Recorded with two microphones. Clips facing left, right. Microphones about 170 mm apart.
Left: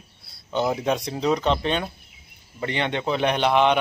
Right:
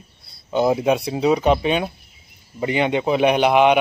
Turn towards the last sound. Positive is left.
turn(degrees=-10)  # may be behind; listen again after turning